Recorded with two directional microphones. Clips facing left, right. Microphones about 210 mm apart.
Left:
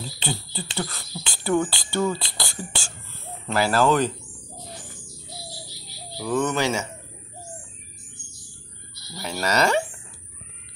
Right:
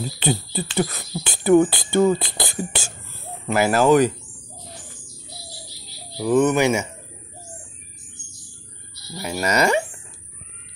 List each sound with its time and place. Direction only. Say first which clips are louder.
0.2 s speech: right 8 dB; 20° right (ahead or behind)
6.1 s speech: right 6 dB; 15° right (ahead or behind)
9.1 s speech: right 2 dB; 10° right (ahead or behind)